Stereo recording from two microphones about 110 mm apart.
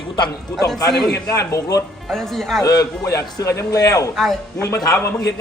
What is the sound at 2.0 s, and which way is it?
Speech, 5° left (ahead or behind).